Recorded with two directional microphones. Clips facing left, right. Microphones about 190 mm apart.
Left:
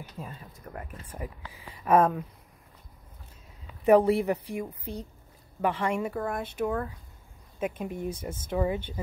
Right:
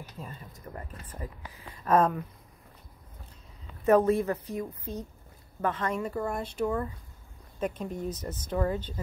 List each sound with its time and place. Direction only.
0.2 s a woman's voice: 15° left (ahead or behind)
3.8 s a woman's voice: 15° left (ahead or behind)
6.1 s a woman's voice: centre (ahead or behind)